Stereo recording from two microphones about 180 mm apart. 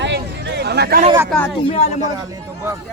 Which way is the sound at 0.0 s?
75° right (ahead or behind).